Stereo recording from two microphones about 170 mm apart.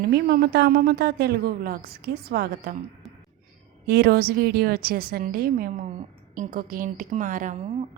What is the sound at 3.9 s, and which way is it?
A woman's voice, 65° right (ahead or behind).